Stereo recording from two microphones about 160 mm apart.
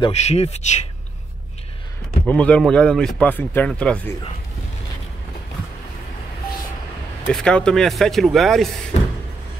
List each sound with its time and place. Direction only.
0.0 s speech: 45° left (ahead or behind)
2.2 s speech: 10° left (ahead or behind)
7.2 s speech: 5° left (ahead or behind)